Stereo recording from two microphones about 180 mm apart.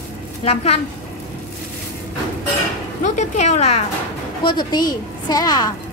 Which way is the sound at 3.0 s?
40° left (ahead or behind).